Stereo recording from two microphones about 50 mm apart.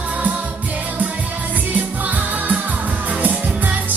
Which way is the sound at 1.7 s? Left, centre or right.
Right.